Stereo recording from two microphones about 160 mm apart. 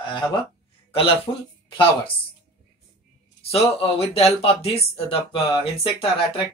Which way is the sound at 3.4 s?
40° left (ahead or behind).